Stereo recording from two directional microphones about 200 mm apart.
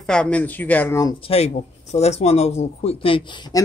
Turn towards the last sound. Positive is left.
turn(degrees=25)  # may be behind; listen again after turning